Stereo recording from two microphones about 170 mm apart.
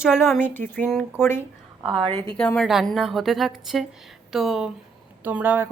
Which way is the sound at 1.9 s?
30° right (ahead or behind).